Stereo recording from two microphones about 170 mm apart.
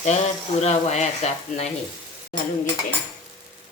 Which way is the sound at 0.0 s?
40° left (ahead or behind).